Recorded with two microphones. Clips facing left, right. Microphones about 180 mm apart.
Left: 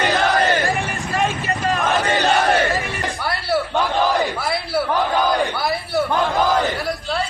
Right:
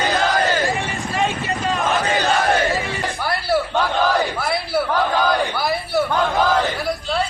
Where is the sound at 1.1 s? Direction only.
20° right (ahead or behind).